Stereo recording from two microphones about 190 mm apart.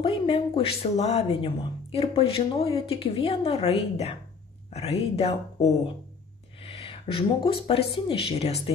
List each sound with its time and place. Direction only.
0.0 s speech: 30° left (ahead or behind)